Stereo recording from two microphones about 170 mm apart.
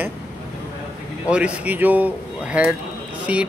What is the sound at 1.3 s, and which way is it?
Speech, 5° right (ahead or behind).